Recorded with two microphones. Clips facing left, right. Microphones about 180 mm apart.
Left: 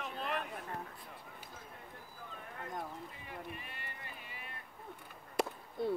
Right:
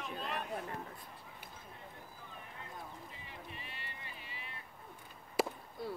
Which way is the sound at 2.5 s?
55° left (ahead or behind).